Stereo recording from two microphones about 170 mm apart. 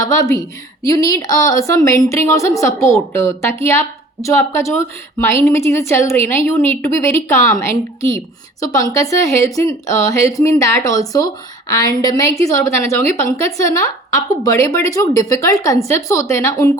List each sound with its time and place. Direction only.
0.3 s a woman's voice: 20° left (ahead or behind)